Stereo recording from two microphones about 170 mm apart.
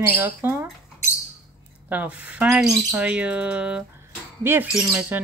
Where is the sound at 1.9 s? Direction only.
10° right (ahead or behind).